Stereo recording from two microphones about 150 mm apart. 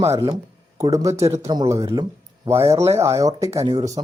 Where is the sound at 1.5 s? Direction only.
20° right (ahead or behind).